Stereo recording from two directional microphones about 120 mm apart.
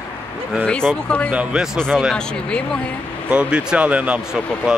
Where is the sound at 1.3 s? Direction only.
10° right (ahead or behind).